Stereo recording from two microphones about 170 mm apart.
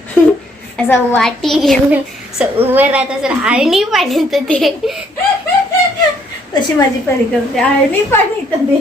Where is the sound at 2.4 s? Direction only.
10° right (ahead or behind).